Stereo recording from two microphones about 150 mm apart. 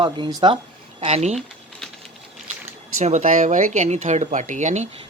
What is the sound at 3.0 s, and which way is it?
Speech, 55° right (ahead or behind).